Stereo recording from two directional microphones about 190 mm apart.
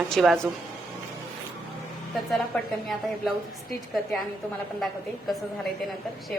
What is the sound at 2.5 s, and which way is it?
Speech, 5° left (ahead or behind).